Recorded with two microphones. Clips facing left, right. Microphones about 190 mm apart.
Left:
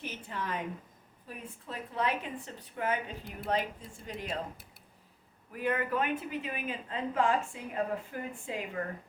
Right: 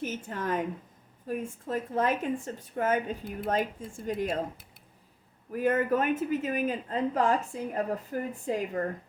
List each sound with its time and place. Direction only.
0.0 s a woman's voice: 45° right (ahead or behind)
5.5 s speech: 45° right (ahead or behind)